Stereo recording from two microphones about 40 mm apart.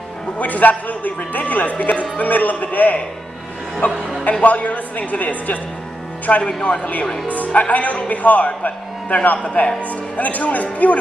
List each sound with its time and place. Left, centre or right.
0.4 s speech: left
4.2 s speech: left
9.4 s speech: left